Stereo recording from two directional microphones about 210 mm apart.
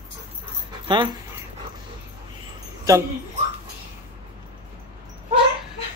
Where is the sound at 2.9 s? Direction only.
15° right (ahead or behind).